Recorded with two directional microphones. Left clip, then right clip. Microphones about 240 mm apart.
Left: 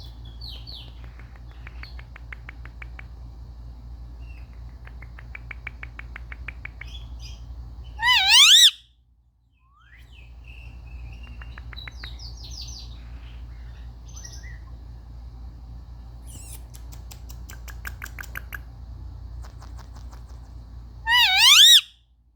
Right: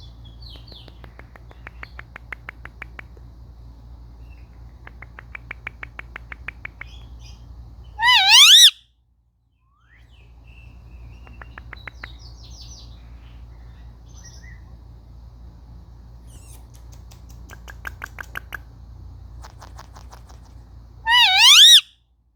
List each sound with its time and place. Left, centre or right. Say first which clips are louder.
1.1 s finger snapping: right 4 dB; right
4.9 s finger snapping: right 5 dB; centre
7.9 s a sound: right 4 dB; centre
11.3 s bird: right 6 dB; centre
16.3 s rodents: left 4 dB; left
17.8 s rodents: right 4 dB; centre
21.0 s a sound: right 3 dB; centre